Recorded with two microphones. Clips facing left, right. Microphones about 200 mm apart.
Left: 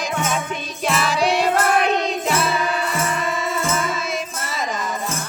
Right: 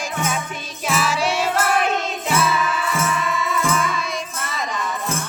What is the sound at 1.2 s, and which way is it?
Music, 60° left (ahead or behind).